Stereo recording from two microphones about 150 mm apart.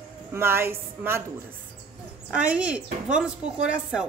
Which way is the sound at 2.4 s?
10° right (ahead or behind).